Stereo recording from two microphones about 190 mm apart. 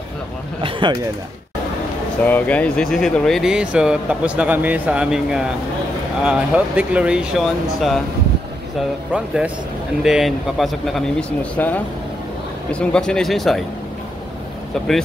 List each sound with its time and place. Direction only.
0.6 s a sound: 25° right (ahead or behind)
2.2 s speech: 10° left (ahead or behind)
9.1 s speech: 5° right (ahead or behind)